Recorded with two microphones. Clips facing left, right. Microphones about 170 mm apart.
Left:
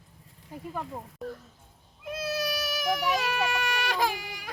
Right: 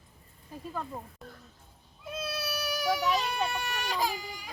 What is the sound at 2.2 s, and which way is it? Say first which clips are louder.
Cat: left 5 dB; 90° left.